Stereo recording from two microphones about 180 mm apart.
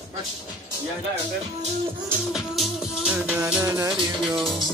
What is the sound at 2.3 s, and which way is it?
Music, centre (ahead or behind).